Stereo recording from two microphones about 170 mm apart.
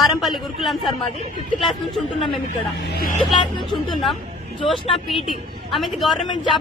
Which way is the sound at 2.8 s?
65° left (ahead or behind).